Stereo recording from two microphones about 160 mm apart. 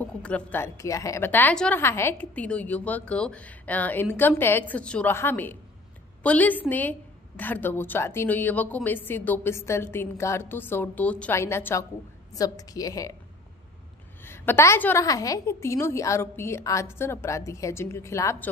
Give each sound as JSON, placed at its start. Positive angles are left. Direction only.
{"t": 0.0, "sound": "a woman's voice", "side_deg": 10}
{"t": 14.2, "sound": "a woman's voice", "side_deg": 15}